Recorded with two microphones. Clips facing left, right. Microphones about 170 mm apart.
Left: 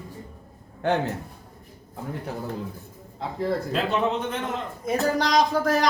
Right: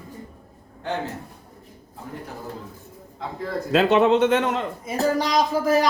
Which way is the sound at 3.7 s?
90° right.